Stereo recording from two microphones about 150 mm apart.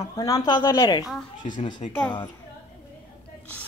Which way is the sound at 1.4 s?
50° left (ahead or behind).